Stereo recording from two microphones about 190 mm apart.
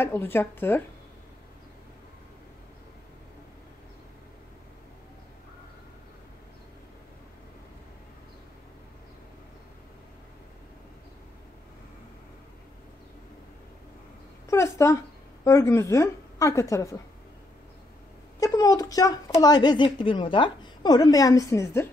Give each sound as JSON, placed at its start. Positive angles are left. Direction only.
{"t": 0.0, "sound": "speech", "side_deg": 10}
{"t": 14.5, "sound": "speech", "side_deg": 15}
{"t": 18.4, "sound": "a woman's voice", "side_deg": 20}